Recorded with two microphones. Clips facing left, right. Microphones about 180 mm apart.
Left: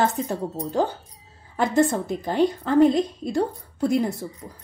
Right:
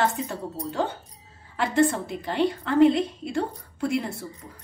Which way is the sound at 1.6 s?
40° left (ahead or behind).